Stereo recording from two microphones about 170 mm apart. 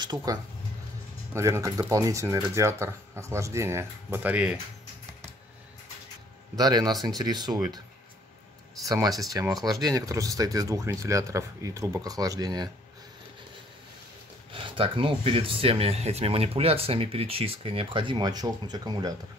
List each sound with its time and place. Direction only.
0.0 s speech: 20° right (ahead or behind)
6.5 s speech: 20° right (ahead or behind)
8.8 s speech: 20° right (ahead or behind)
14.5 s speech: 30° right (ahead or behind)